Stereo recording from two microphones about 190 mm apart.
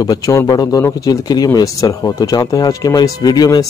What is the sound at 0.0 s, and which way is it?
Speech, 20° left (ahead or behind).